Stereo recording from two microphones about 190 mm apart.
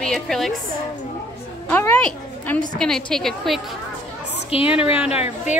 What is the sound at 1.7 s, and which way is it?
A woman's voice, 10° left (ahead or behind).